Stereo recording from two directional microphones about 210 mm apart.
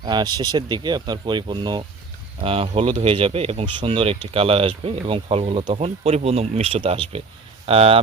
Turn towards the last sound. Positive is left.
turn(degrees=-25)  # may be behind; listen again after turning